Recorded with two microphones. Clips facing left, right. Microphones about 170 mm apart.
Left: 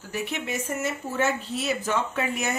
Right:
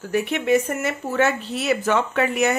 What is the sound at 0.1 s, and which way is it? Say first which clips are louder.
A woman's voice: right 11 dB; 60° right (ahead or behind).